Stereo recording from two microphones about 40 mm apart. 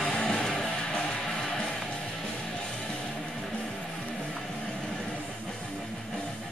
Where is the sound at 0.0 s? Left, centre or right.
Centre.